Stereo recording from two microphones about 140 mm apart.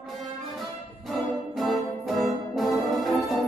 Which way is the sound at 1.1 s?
Centre (ahead or behind).